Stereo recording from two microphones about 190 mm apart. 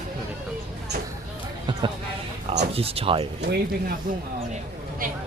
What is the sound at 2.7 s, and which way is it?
Speech, 30° right (ahead or behind).